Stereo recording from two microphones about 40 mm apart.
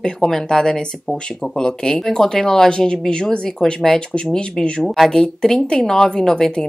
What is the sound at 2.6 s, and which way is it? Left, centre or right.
Speech, left.